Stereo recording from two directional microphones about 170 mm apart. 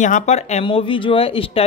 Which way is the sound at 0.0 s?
45° left (ahead or behind).